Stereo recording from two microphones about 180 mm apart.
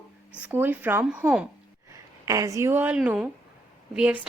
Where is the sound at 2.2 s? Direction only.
20° right (ahead or behind).